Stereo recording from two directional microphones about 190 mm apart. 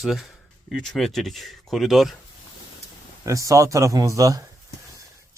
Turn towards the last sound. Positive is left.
turn(degrees=-15)  # may be behind; listen again after turning